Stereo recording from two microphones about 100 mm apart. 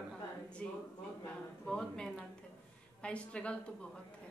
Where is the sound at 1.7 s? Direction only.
10° left (ahead or behind).